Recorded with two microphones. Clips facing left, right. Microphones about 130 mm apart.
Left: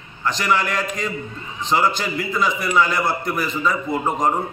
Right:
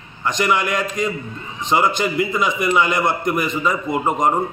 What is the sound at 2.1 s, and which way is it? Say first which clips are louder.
A man's voice: right 3 dB; 10° right (ahead or behind).